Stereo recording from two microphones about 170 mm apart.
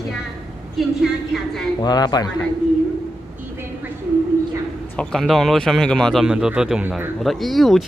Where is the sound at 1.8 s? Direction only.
25° left (ahead or behind).